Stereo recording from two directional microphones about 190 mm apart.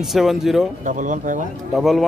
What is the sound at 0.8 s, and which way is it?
Speech, 40° right (ahead or behind).